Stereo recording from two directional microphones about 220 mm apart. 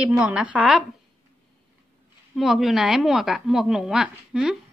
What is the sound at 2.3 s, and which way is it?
A woman's voice, centre (ahead or behind).